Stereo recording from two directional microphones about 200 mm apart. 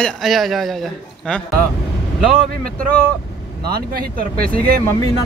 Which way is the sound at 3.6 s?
50° right (ahead or behind).